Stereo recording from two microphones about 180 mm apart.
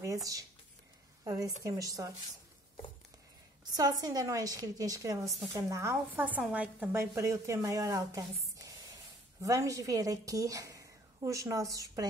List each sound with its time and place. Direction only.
0.0 s a woman's voice: 20° right (ahead or behind)
3.7 s a woman's voice: 20° right (ahead or behind)